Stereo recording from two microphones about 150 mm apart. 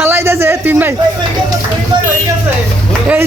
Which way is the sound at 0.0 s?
15° right (ahead or behind).